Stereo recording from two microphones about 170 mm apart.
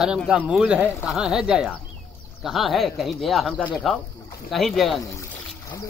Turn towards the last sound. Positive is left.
turn(degrees=0)  # may be behind; listen again after turning